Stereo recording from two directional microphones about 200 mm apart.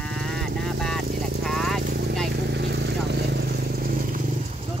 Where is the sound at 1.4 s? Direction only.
Centre (ahead or behind).